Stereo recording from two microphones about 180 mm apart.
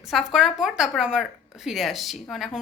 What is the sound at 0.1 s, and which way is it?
A woman's voice, centre (ahead or behind).